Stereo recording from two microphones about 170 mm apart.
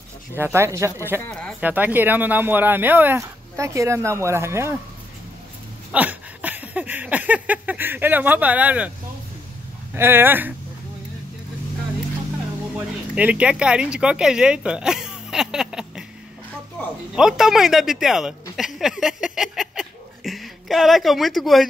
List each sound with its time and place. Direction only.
0.4 s speech: 15° right (ahead or behind)
5.9 s a sound: 10° right (ahead or behind)
9.9 s speech: 15° right (ahead or behind)
12.7 s speech: 5° right (ahead or behind)
17.1 s speech: 5° right (ahead or behind)